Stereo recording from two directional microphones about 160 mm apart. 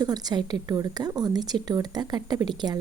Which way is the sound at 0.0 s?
25° right (ahead or behind).